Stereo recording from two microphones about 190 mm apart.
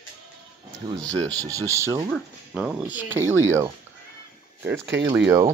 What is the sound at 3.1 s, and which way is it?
Speech, 10° right (ahead or behind).